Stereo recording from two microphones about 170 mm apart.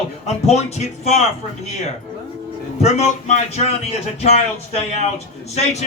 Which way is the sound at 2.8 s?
40° left (ahead or behind).